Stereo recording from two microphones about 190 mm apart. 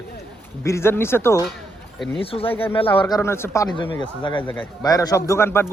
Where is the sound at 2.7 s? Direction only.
25° left (ahead or behind).